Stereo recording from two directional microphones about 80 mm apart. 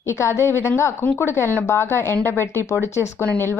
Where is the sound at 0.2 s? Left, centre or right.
Left.